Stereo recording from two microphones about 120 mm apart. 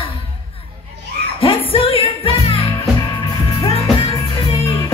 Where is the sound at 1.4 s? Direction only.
50° left (ahead or behind).